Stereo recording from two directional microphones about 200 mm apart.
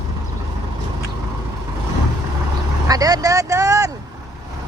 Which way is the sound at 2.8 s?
20° right (ahead or behind).